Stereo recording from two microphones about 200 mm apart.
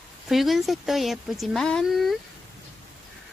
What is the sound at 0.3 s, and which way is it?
Speech, centre (ahead or behind).